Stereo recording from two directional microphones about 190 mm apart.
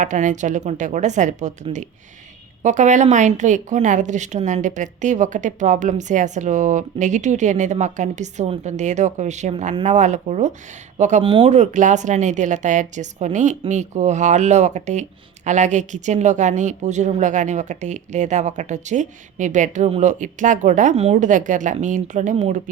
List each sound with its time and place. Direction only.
0.0 s a woman's voice: 40° right (ahead or behind)